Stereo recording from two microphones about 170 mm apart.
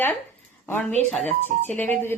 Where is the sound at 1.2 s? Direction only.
40° right (ahead or behind).